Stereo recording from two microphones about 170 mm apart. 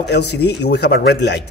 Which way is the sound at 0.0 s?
75° left (ahead or behind).